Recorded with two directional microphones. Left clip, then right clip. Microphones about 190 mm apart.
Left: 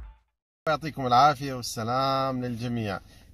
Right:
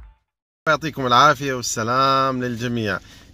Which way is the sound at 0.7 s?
15° right (ahead or behind).